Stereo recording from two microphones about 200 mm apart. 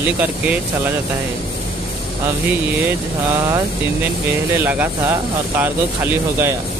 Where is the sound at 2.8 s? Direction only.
15° right (ahead or behind).